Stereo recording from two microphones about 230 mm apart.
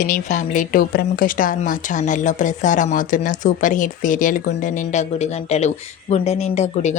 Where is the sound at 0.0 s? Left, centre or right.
Left.